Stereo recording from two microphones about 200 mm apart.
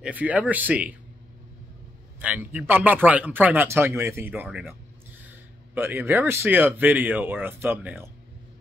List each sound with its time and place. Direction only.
0.0 s speech: 5° right (ahead or behind)
2.1 s speech: 10° right (ahead or behind)
5.8 s speech: 10° right (ahead or behind)